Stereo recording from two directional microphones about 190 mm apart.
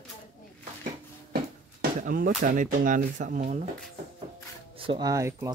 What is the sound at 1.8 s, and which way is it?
Speech, 45° right (ahead or behind).